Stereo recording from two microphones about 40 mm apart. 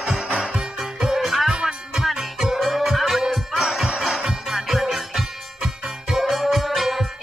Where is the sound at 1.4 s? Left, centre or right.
Centre.